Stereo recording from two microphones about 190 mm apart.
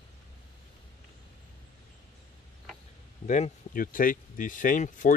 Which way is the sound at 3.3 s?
45° left (ahead or behind).